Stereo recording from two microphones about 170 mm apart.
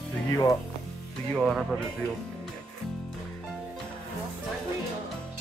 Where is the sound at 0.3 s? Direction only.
20° left (ahead or behind).